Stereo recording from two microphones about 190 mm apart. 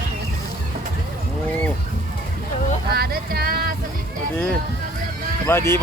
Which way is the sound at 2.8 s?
55° right (ahead or behind).